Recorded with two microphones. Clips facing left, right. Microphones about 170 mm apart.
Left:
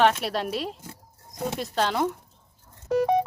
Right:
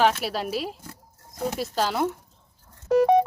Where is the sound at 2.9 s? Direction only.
60° right (ahead or behind).